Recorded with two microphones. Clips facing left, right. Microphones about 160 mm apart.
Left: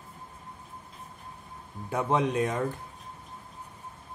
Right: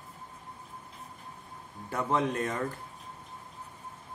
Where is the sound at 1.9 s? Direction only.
20° left (ahead or behind).